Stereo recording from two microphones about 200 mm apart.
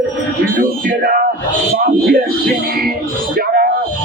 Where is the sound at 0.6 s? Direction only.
50° right (ahead or behind).